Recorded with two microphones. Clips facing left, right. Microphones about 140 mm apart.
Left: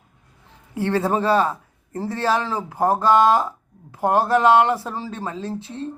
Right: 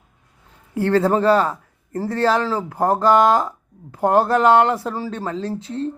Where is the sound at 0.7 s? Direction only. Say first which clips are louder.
Right 4 dB; 15° left (ahead or behind).